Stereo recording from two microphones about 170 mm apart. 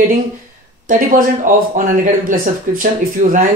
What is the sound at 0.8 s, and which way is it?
Speech, 50° right (ahead or behind).